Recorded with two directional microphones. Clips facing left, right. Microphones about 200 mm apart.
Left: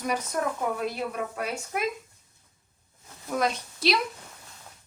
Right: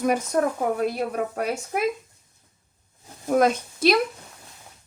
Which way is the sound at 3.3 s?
50° right (ahead or behind).